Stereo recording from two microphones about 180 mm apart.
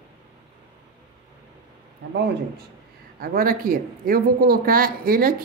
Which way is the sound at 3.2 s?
55° right (ahead or behind).